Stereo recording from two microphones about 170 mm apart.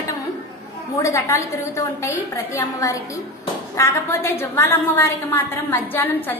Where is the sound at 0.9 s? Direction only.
15° left (ahead or behind).